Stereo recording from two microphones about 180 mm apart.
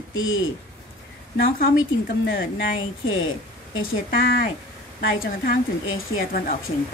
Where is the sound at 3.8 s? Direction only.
55° left (ahead or behind).